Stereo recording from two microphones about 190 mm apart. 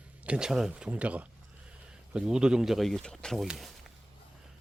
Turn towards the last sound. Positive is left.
turn(degrees=0)  # may be behind; listen again after turning